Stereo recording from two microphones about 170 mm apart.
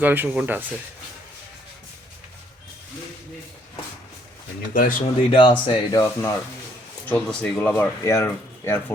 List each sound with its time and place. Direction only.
0.0 s speech: 10° right (ahead or behind)
4.7 s speech: 55° left (ahead or behind)
5.3 s speech: 30° left (ahead or behind)
7.1 s speech: 5° left (ahead or behind)